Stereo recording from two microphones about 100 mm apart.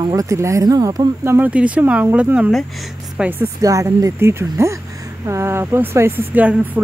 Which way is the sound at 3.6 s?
35° right (ahead or behind).